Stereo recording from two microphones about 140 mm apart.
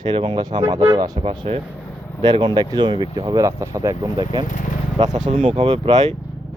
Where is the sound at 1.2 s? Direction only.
40° right (ahead or behind); by 4.1 s 20° right (ahead or behind).